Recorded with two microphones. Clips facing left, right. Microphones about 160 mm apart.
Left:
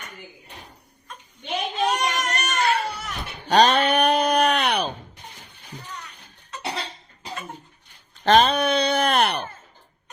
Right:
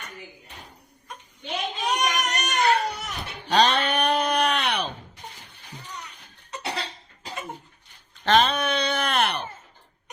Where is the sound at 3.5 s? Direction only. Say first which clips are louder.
Left 4 dB; 45° left (ahead or behind).